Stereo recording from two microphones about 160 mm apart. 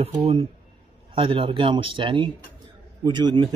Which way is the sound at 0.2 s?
40° right (ahead or behind).